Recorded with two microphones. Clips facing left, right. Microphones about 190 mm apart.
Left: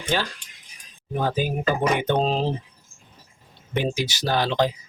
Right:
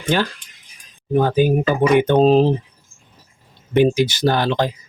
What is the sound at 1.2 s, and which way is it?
Speech, 55° right (ahead or behind).